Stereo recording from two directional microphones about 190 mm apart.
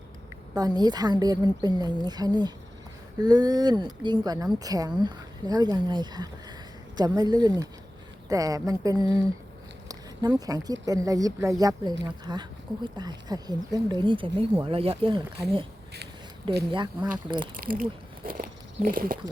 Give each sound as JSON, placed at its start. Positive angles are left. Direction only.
{"t": 0.5, "sound": "speech", "side_deg": -20}
{"t": 16.7, "sound": "speech", "side_deg": -25}
{"t": 17.6, "sound": "a sound", "side_deg": -50}